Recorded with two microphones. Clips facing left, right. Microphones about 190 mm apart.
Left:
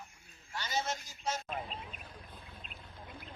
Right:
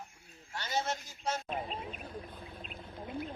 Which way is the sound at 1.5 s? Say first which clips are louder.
Right 3 dB; 40° right (ahead or behind).